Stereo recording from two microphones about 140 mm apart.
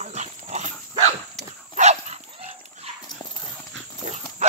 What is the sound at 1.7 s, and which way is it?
Dog, 55° right (ahead or behind).